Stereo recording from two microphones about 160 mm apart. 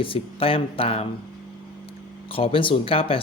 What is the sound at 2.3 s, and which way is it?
Speech, 35° left (ahead or behind).